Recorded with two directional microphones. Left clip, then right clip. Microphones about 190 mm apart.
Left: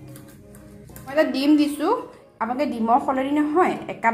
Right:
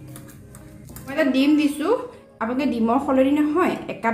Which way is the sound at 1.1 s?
35° left (ahead or behind).